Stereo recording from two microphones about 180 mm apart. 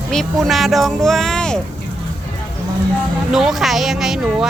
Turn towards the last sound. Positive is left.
turn(degrees=0)  # may be behind; listen again after turning